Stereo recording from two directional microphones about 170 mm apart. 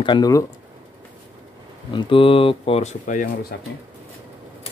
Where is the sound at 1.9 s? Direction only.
30° left (ahead or behind); by 3.3 s 50° left (ahead or behind).